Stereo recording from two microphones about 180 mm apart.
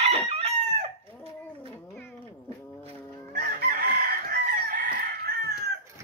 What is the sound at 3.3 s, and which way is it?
Chicken, 55° right (ahead or behind).